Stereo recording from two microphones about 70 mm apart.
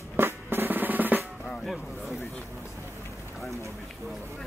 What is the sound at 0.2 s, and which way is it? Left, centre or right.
Drum, right.